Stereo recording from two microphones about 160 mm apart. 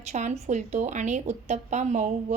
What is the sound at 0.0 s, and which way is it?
Speech, 45° right (ahead or behind).